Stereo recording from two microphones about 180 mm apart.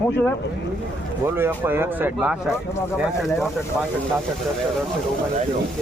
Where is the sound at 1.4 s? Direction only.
10° right (ahead or behind).